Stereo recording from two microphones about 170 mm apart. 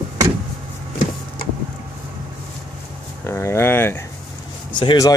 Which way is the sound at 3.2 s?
15° left (ahead or behind).